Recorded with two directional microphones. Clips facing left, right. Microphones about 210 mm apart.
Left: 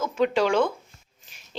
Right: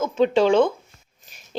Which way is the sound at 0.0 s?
25° right (ahead or behind).